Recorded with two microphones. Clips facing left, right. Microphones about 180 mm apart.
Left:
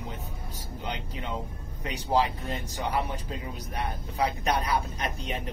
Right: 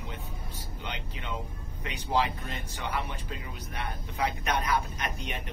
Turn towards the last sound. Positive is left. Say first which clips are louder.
# left 3 dB
turn(degrees=35)  # may be behind; listen again after turning